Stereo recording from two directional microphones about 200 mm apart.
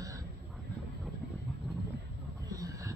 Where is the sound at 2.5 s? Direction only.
15° right (ahead or behind).